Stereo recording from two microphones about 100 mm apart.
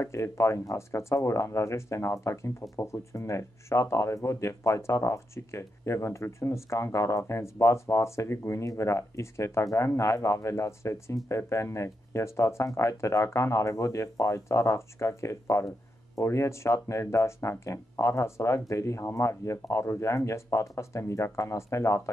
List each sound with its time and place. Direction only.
0.0 s speech: 30° left (ahead or behind)